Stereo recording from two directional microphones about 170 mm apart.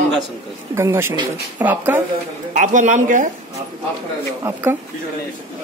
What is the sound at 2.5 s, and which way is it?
Speech, 45° right (ahead or behind).